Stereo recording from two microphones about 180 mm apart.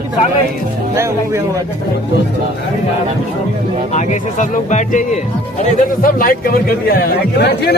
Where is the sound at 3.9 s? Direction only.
40° left (ahead or behind).